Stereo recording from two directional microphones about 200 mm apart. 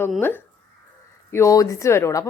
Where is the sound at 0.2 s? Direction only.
10° left (ahead or behind).